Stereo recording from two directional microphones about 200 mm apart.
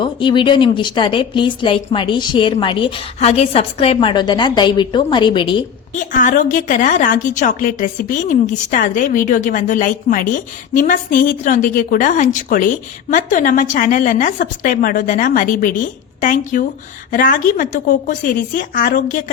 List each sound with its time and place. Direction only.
0.0 s speech: 25° left (ahead or behind)
6.0 s a woman's voice: 40° left (ahead or behind)